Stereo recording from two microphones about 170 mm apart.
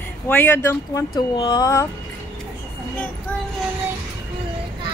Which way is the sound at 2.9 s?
10° left (ahead or behind).